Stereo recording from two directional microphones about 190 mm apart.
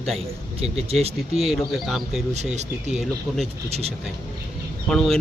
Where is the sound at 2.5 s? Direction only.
35° right (ahead or behind).